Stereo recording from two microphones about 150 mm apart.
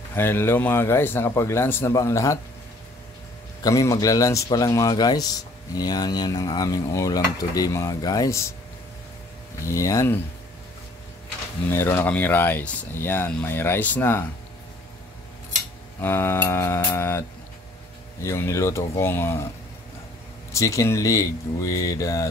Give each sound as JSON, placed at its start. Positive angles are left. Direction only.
{"t": 0.1, "sound": "speech", "side_deg": 15}
{"t": 3.6, "sound": "cutlery", "side_deg": 20}
{"t": 9.7, "sound": "cutlery", "side_deg": 20}
{"t": 11.7, "sound": "speech", "side_deg": 15}
{"t": 16.0, "sound": "speech", "side_deg": 15}
{"t": 18.2, "sound": "speech", "side_deg": 20}
{"t": 20.5, "sound": "cutlery", "side_deg": 20}